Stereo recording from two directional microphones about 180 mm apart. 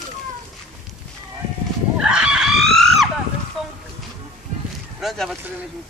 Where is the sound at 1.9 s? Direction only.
5° right (ahead or behind).